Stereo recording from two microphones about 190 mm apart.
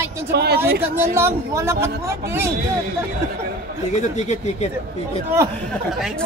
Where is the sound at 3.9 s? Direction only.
40° left (ahead or behind).